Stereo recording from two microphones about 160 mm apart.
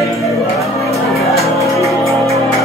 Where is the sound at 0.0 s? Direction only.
20° left (ahead or behind).